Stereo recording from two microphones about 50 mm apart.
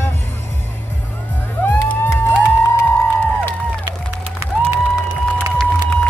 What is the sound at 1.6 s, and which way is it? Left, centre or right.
Music, left.